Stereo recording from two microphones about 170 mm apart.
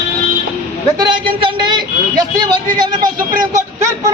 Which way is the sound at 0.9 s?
25° right (ahead or behind).